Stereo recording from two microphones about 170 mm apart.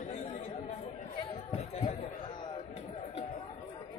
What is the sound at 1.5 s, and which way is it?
Chatter, 35° left (ahead or behind).